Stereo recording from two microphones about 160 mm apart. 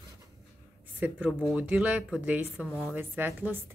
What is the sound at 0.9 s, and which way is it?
Speech, 10° right (ahead or behind).